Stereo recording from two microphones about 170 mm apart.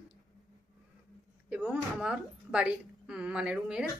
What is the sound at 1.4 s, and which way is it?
A woman's voice, 5° right (ahead or behind).